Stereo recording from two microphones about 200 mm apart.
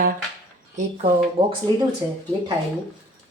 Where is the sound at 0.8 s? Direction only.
35° right (ahead or behind).